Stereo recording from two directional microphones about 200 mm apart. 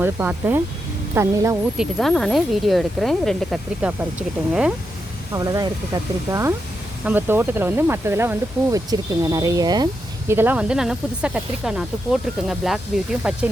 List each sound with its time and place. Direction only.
0.0 s speech: 10° right (ahead or behind)
1.8 s speech: centre (ahead or behind)
5.3 s speech: 20° right (ahead or behind)